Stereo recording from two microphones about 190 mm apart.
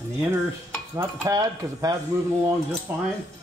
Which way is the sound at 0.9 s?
15° right (ahead or behind).